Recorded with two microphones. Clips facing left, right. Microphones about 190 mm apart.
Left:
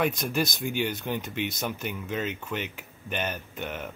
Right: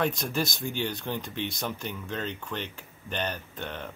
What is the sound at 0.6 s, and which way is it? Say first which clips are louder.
Speech: left 3 dB; 15° left (ahead or behind).